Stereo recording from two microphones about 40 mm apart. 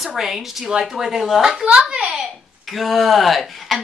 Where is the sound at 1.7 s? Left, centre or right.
Right.